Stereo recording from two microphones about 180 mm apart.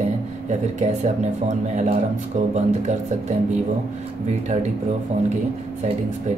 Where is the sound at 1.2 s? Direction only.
40° right (ahead or behind).